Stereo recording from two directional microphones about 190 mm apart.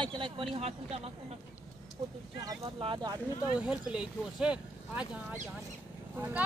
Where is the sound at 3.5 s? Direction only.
5° right (ahead or behind).